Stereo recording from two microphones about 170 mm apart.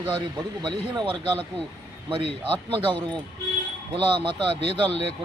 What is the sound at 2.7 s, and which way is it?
A man's voice, 30° right (ahead or behind).